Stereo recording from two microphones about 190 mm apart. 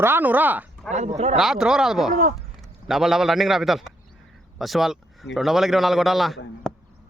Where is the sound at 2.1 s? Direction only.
45° right (ahead or behind).